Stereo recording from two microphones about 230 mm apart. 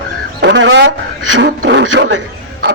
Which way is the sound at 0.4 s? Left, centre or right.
Right.